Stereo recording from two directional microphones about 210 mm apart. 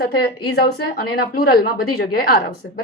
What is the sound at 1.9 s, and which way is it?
Speech, 45° left (ahead or behind).